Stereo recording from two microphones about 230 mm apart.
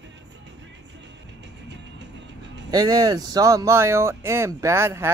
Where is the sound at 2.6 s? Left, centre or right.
Centre.